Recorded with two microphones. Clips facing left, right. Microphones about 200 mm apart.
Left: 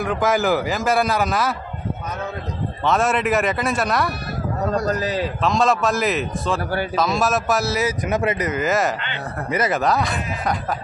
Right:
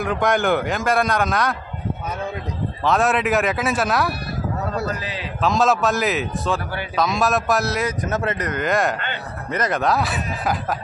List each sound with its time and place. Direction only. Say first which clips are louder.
0.0 s a man's voice: even; centre (ahead or behind)
2.8 s a man's voice: even; centre (ahead or behind)
4.8 s a man's voice: left 6 dB; 40° left (ahead or behind)
5.4 s a man's voice: right 2 dB; centre (ahead or behind)